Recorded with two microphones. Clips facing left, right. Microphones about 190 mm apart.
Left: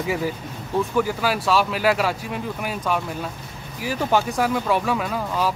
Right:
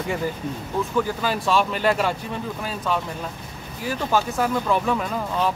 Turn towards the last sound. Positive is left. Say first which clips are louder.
# even
turn(degrees=5)  # may be behind; listen again after turning